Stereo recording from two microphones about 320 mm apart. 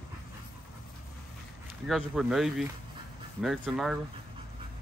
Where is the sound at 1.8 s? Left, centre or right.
Centre.